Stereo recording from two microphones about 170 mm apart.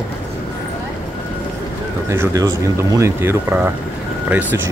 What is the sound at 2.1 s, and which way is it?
Speech, 20° right (ahead or behind).